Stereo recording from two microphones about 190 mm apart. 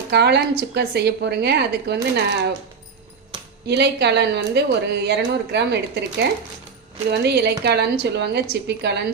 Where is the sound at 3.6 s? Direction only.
60° right (ahead or behind).